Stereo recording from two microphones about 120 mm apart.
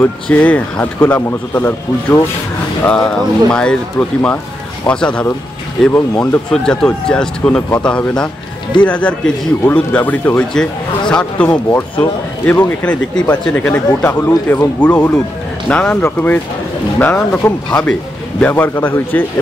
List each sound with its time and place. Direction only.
0.0 s speech: 10° left (ahead or behind)
2.9 s speech: 5° left (ahead or behind)
4.8 s speech: 10° left (ahead or behind)